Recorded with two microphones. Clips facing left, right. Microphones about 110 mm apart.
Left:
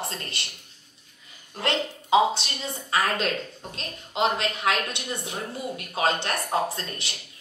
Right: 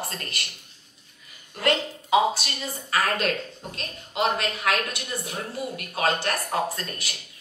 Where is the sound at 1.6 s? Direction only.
25° left (ahead or behind).